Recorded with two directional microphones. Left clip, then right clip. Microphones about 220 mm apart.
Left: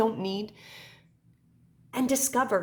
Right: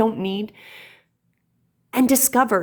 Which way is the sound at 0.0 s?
20° right (ahead or behind).